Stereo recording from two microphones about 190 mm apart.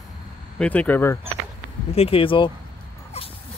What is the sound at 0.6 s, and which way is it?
Speech, 5° left (ahead or behind).